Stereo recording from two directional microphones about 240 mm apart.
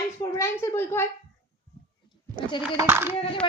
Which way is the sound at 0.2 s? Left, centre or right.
Centre.